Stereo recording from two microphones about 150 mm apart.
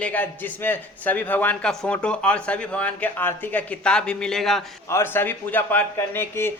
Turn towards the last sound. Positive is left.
turn(degrees=15)  # may be behind; listen again after turning